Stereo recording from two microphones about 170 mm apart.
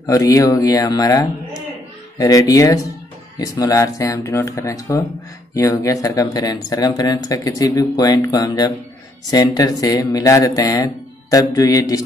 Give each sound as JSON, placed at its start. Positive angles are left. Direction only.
{"t": 0.0, "sound": "speech", "side_deg": 20}